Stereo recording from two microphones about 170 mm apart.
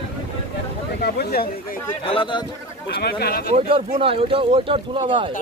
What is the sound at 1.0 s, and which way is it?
Speech, 65° left (ahead or behind).